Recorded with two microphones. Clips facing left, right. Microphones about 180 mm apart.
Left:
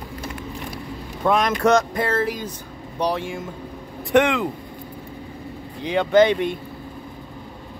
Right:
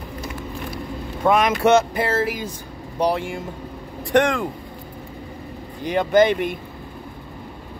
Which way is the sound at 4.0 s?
Centre (ahead or behind).